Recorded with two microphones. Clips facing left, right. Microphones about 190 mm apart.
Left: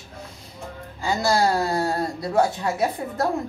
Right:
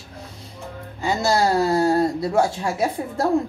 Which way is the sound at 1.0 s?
20° right (ahead or behind).